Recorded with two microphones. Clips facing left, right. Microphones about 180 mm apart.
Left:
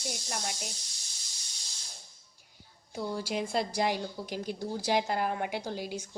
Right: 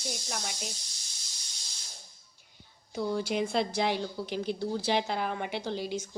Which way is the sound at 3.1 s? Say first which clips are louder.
Right 2 dB; 5° left (ahead or behind).